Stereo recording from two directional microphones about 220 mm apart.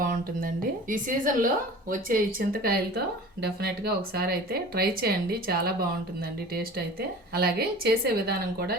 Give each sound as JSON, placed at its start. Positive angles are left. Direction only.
{"t": 0.0, "sound": "a woman's voice", "side_deg": -40}